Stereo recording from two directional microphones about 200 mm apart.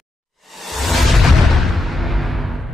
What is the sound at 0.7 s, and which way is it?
Music, centre (ahead or behind).